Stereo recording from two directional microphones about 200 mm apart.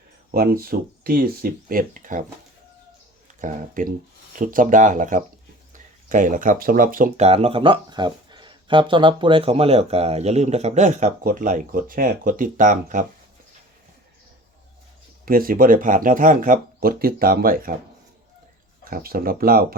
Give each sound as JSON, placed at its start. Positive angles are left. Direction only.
{"t": 0.3, "sound": "speech", "side_deg": -45}
{"t": 3.4, "sound": "speech", "side_deg": -40}
{"t": 15.2, "sound": "speech", "side_deg": -45}
{"t": 18.9, "sound": "speech", "side_deg": -45}